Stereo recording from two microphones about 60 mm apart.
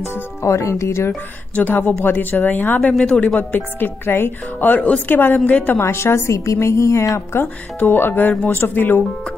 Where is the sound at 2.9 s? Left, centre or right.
Centre.